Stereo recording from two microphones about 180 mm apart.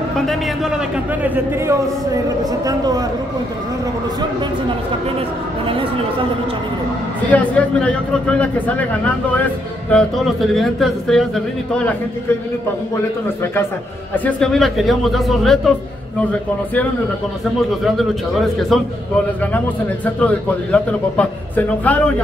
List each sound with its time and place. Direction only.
0.3 s a man's voice: 5° right (ahead or behind)
2.2 s a man's voice: 20° right (ahead or behind)
5.7 s a man's voice: 30° right (ahead or behind)
7.2 s speech: 10° left (ahead or behind)
12.9 s speech: 15° left (ahead or behind)
17.8 s speech: centre (ahead or behind)
20.2 s speech: 10° left (ahead or behind)